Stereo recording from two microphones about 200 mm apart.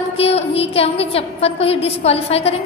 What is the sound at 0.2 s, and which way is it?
A woman's voice, 30° left (ahead or behind).